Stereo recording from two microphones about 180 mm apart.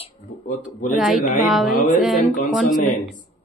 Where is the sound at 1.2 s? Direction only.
45° left (ahead or behind).